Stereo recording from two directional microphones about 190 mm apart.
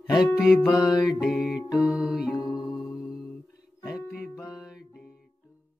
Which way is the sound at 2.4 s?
20° left (ahead or behind).